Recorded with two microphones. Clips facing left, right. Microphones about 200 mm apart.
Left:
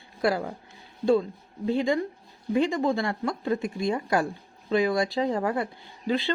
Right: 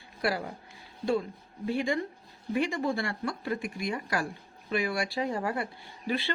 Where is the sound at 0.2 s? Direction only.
25° left (ahead or behind).